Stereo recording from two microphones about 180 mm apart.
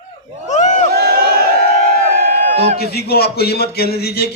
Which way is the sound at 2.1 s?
55° right (ahead or behind).